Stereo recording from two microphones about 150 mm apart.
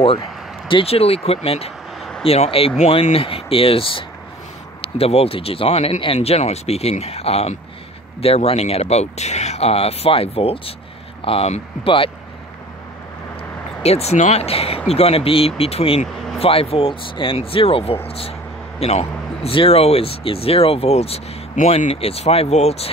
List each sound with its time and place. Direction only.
0.7 s speech: 40° left (ahead or behind)
2.0 s a sound: centre (ahead or behind)
2.2 s speech: 40° left (ahead or behind)
13.8 s speech: 45° left (ahead or behind)